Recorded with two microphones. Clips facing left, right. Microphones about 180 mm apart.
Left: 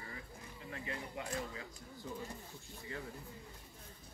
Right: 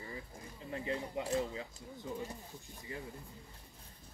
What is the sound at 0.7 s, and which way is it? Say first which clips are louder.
Speech: right 6 dB; 25° right (ahead or behind).